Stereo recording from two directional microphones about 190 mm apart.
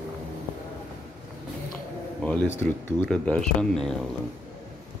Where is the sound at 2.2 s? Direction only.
10° left (ahead or behind).